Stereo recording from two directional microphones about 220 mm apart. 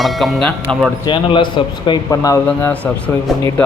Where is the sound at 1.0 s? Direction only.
20° left (ahead or behind).